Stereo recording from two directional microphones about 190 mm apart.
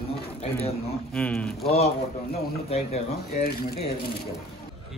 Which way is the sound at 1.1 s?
5° left (ahead or behind).